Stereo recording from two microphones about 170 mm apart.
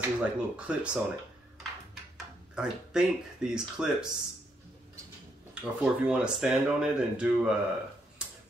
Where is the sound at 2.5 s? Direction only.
5° right (ahead or behind).